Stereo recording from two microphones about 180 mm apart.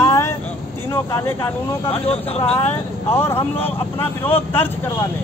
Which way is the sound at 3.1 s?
15° left (ahead or behind).